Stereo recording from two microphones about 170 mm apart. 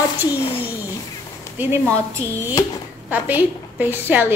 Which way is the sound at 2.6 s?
20° left (ahead or behind).